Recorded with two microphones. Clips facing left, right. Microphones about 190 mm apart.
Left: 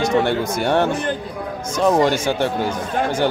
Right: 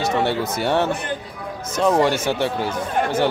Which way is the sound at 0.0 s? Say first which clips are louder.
Left 3 dB; 5° right (ahead or behind).